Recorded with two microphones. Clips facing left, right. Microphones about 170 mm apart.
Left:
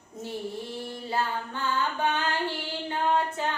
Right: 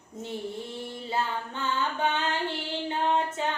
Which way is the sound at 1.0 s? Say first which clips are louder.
Left 1 dB; 20° right (ahead or behind).